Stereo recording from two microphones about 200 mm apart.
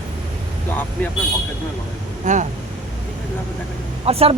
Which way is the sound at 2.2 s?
40° right (ahead or behind).